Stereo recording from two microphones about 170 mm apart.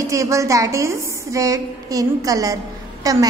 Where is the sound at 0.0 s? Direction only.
20° right (ahead or behind).